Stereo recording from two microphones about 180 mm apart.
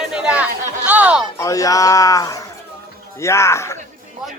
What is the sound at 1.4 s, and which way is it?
Speech, 20° left (ahead or behind).